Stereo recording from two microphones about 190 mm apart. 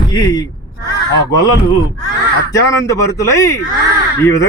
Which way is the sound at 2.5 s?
15° left (ahead or behind).